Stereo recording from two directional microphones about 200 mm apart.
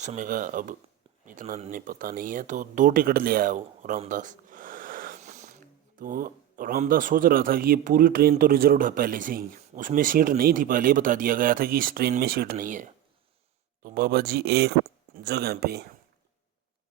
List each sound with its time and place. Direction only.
0.0 s speech: 40° right (ahead or behind)